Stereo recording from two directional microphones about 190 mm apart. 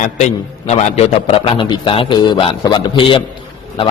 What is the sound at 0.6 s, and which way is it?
A man's voice, 35° left (ahead or behind).